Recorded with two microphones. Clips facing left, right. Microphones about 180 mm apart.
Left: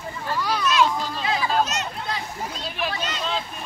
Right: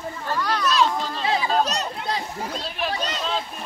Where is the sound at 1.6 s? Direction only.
35° right (ahead or behind).